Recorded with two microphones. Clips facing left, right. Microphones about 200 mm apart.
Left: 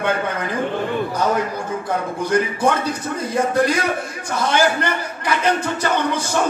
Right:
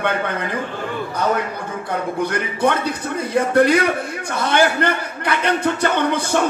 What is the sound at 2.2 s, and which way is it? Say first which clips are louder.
A man's voice: left 3 dB; 60° right (ahead or behind).